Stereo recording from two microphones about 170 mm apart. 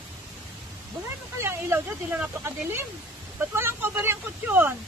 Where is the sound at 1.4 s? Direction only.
15° right (ahead or behind).